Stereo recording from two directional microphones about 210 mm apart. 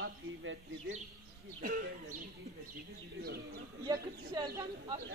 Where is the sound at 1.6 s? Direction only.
40° right (ahead or behind).